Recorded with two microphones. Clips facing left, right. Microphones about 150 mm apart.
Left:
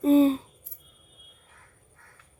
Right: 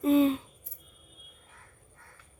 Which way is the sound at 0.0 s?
35° left (ahead or behind).